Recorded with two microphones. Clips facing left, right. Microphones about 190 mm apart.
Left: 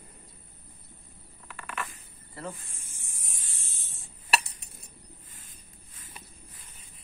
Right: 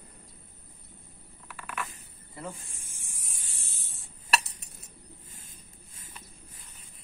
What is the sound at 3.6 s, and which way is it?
Spray, 35° right (ahead or behind).